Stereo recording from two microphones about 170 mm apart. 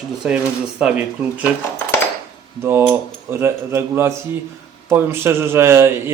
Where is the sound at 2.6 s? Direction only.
15° right (ahead or behind).